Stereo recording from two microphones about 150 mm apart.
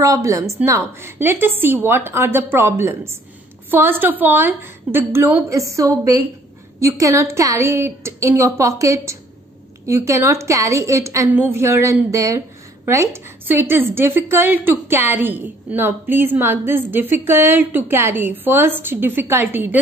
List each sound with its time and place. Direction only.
0.0 s a woman's voice: 20° right (ahead or behind)